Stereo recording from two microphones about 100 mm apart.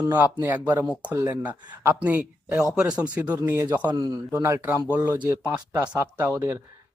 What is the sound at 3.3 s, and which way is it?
Speech, 25° right (ahead or behind).